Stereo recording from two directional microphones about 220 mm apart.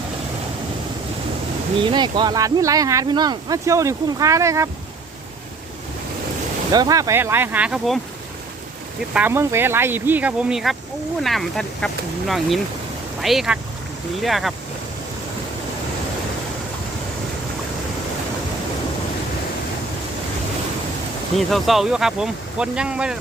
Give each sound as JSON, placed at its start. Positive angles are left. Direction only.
{"t": 1.8, "sound": "speech", "side_deg": -20}
{"t": 6.7, "sound": "speech", "side_deg": -15}
{"t": 9.0, "sound": "speech", "side_deg": -5}
{"t": 13.2, "sound": "speech", "side_deg": 0}
{"t": 21.3, "sound": "speech", "side_deg": 0}